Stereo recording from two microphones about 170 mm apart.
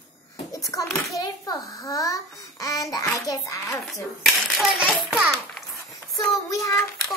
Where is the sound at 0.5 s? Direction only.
20° left (ahead or behind).